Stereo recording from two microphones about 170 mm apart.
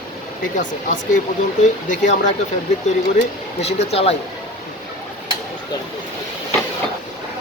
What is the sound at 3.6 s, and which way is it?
Speech, 40° left (ahead or behind).